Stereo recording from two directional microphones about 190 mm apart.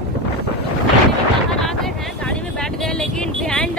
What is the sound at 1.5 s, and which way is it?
Vehicle, centre (ahead or behind).